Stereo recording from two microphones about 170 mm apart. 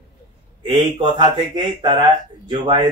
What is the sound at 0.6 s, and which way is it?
Speech, 25° right (ahead or behind).